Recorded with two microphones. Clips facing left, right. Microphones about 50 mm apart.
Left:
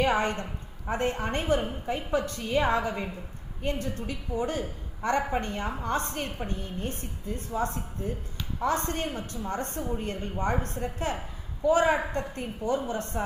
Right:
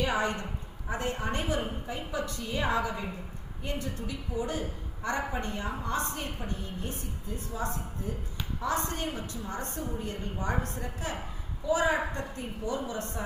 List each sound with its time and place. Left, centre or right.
0.0 s a woman's voice: left